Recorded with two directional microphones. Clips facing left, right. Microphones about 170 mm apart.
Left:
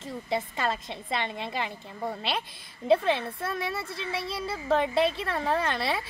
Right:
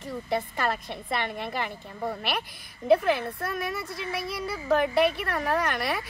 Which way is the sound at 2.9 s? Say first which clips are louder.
Right 2 dB; 25° left (ahead or behind).